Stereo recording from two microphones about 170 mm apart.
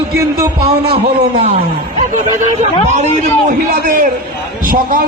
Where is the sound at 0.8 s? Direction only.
35° right (ahead or behind).